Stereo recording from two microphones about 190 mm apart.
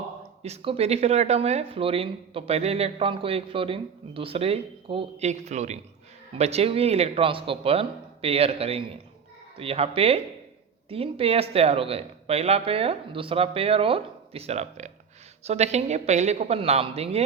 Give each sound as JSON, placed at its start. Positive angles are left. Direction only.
{"t": 0.4, "sound": "speech", "side_deg": -30}